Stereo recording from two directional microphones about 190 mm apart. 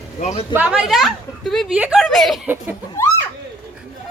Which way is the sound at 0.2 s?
40° left (ahead or behind).